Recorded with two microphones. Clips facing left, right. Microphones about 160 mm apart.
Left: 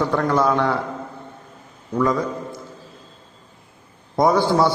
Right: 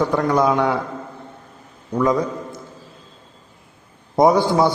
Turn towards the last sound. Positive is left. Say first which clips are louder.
# right 2 dB
turn(degrees=-20)  # may be behind; listen again after turning